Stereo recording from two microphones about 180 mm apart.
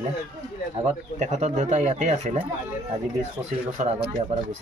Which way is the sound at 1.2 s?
40° right (ahead or behind).